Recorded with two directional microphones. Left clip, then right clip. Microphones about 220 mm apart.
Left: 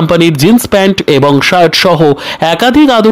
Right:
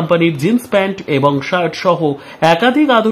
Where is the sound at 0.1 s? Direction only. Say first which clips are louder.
Left 6 dB; 45° left (ahead or behind).